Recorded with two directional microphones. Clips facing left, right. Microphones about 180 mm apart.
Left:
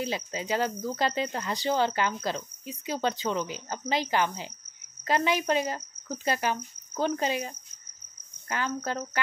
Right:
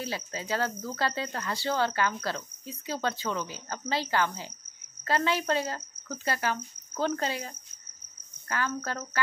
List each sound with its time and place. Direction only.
0.0 s speech: 20° left (ahead or behind)